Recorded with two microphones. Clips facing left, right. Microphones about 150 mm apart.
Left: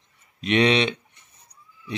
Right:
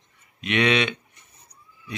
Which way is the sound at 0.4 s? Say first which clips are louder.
Left 2 dB; 35° left (ahead or behind).